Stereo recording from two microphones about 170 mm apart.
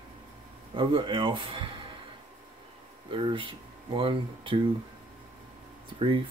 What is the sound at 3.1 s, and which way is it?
Speech, 30° right (ahead or behind).